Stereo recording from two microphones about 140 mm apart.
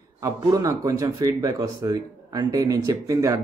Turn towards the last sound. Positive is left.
turn(degrees=-20)  # may be behind; listen again after turning